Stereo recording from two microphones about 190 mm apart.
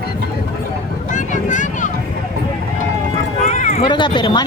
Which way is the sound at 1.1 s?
40° left (ahead or behind).